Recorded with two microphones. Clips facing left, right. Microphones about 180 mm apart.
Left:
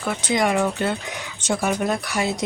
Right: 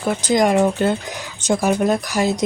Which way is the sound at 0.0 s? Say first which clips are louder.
Right 5 dB; 40° right (ahead or behind).